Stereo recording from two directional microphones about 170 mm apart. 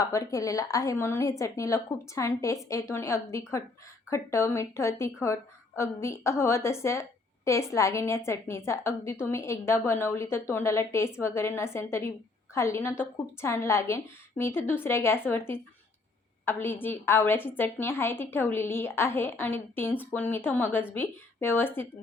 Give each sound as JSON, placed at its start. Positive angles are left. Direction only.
{"t": 0.0, "sound": "a woman's voice", "side_deg": 20}